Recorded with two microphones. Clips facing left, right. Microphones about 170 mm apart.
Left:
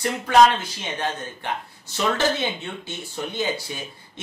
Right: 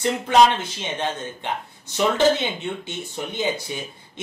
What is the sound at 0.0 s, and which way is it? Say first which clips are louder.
Speech: even; 20° right (ahead or behind).